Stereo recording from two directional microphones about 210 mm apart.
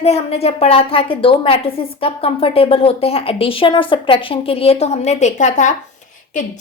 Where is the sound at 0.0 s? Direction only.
30° left (ahead or behind).